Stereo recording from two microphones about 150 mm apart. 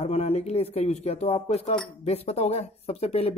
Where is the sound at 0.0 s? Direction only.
45° left (ahead or behind).